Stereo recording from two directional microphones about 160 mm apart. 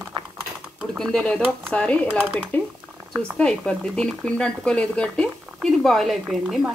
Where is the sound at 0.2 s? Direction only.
30° right (ahead or behind).